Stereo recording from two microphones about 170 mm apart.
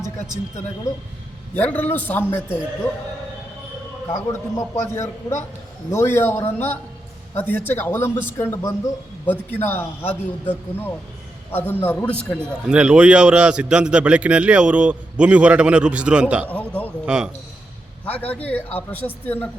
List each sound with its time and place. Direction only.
1.5 s a man's voice: 10° left (ahead or behind)
4.1 s a man's voice: 15° left (ahead or behind)
12.6 s a man's voice: 5° right (ahead or behind)
16.5 s speech: 10° left (ahead or behind)
17.1 s a man's voice: 5° right (ahead or behind)
18.0 s a man's voice: 10° left (ahead or behind)